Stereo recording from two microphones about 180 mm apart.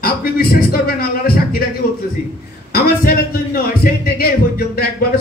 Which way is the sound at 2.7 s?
55° left (ahead or behind).